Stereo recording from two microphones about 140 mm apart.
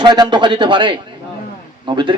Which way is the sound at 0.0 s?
30° right (ahead or behind).